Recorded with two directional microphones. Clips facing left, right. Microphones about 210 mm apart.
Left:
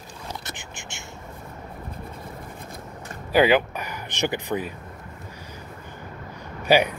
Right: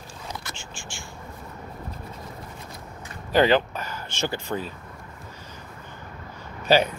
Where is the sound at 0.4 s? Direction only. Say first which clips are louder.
Left 1 dB; 20° left (ahead or behind).